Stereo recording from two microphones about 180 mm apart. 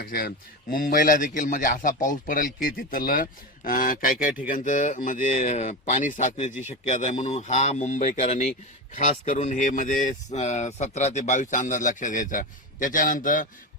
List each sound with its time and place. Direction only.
0.0 s speech: 55° left (ahead or behind)